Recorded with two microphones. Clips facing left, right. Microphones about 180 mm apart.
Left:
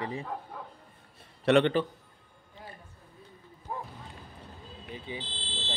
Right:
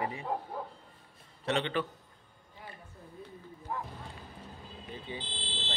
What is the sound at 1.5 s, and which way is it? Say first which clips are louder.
Speech: left 9 dB; 60° left (ahead or behind).